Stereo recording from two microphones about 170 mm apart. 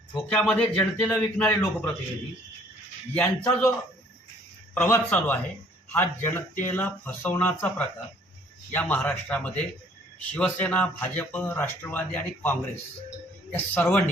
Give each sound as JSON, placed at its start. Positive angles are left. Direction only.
{"t": 0.1, "sound": "a man's voice", "side_deg": 5}
{"t": 3.2, "sound": "a man's voice", "side_deg": 10}
{"t": 4.7, "sound": "a man's voice", "side_deg": 10}